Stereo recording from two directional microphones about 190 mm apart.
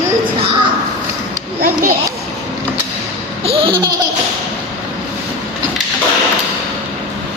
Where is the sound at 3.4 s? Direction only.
30° right (ahead or behind).